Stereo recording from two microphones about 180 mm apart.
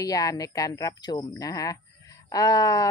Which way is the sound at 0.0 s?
20° left (ahead or behind).